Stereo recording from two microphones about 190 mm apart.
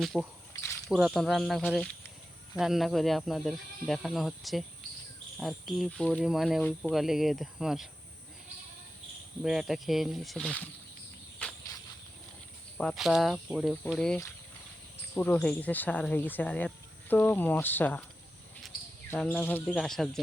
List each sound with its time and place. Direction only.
0.0 s speech: centre (ahead or behind)
0.5 s a sound: 20° left (ahead or behind)
0.9 s speech: 5° right (ahead or behind)
9.4 s speech: centre (ahead or behind)
11.4 s cricket: 5° left (ahead or behind)
12.7 s speech: centre (ahead or behind)
19.1 s speech: 5° left (ahead or behind)